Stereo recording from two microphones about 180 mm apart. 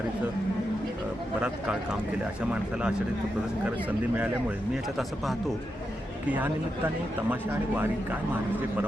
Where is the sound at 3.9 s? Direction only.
10° right (ahead or behind).